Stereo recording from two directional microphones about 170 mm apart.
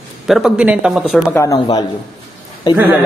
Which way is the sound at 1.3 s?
20° left (ahead or behind).